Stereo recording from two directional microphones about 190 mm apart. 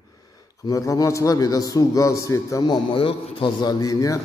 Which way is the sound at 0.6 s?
15° left (ahead or behind).